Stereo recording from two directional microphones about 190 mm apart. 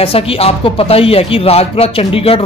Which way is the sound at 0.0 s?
30° left (ahead or behind).